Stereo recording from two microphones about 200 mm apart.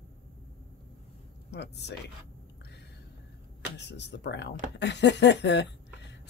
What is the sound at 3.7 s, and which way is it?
Speech, 60° left (ahead or behind).